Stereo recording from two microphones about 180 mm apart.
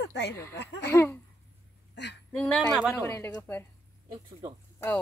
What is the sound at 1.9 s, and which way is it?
Speech, 70° left (ahead or behind).